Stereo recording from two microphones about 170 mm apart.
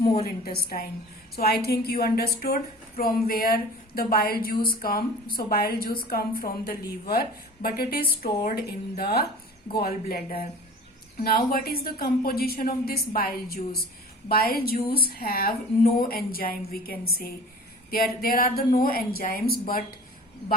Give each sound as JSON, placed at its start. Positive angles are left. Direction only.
{"t": 0.2, "sound": "a woman's voice", "side_deg": 65}
{"t": 11.2, "sound": "a woman's voice", "side_deg": 60}